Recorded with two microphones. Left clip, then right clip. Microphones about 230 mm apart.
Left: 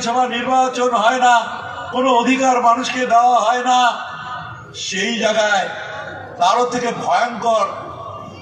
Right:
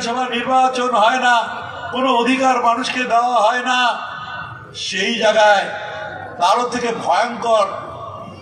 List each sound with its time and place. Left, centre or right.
0.0 s a man's voice: right